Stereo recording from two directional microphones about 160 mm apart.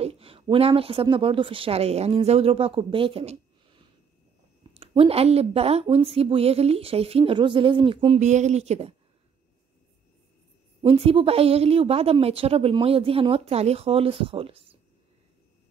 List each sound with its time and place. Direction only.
0.0 s a woman's voice: 35° right (ahead or behind)
8.2 s speech: 45° right (ahead or behind)
10.8 s a woman's voice: 35° right (ahead or behind)